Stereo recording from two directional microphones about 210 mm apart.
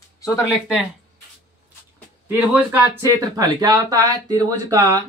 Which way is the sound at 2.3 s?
10° right (ahead or behind).